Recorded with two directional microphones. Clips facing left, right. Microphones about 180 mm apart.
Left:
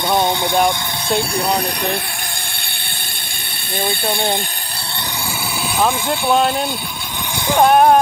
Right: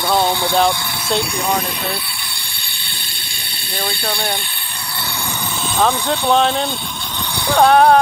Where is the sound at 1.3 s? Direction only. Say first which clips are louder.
Left 1 dB; 35° left (ahead or behind).